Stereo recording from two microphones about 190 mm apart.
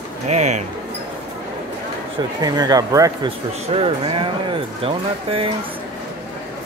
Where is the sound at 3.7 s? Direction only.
30° right (ahead or behind).